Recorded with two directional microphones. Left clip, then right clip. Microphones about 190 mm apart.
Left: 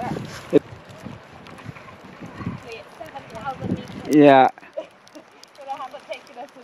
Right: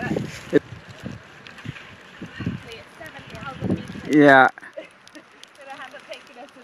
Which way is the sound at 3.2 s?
20° right (ahead or behind).